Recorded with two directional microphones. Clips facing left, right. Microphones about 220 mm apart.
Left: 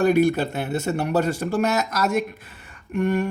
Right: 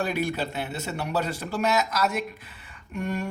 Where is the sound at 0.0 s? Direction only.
50° left (ahead or behind).